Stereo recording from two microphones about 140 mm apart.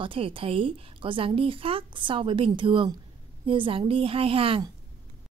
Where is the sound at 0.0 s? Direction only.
40° right (ahead or behind).